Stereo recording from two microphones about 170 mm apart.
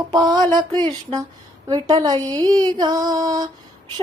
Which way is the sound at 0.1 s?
25° right (ahead or behind).